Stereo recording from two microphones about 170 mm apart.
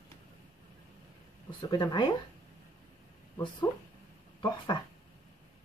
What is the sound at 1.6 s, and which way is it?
Speech, 25° left (ahead or behind).